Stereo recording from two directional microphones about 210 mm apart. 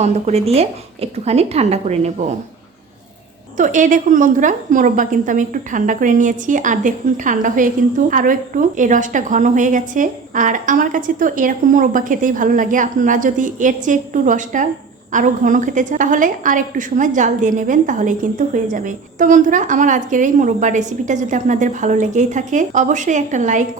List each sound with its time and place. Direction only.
0.0 s a woman's voice: 30° right (ahead or behind)
3.6 s a woman's voice: 40° right (ahead or behind)